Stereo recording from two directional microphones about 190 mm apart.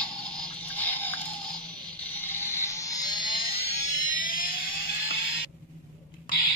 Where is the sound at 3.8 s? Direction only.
45° left (ahead or behind).